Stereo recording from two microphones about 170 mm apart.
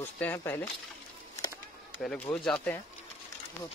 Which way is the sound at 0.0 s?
10° left (ahead or behind).